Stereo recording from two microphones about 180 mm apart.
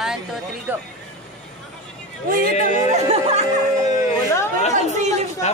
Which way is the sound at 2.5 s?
40° left (ahead or behind).